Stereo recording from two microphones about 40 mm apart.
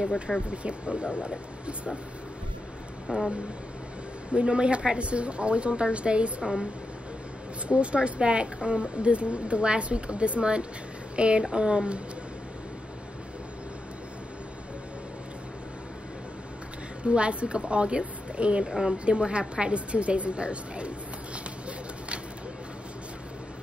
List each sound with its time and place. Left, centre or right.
0.0 s speech: centre
0.5 s speech: right
3.1 s speech: right
4.3 s speech: right
17.0 s speech: right
18.7 s speech: centre
19.0 s speech: right